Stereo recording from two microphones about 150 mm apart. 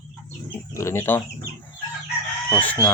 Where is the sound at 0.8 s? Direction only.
20° left (ahead or behind).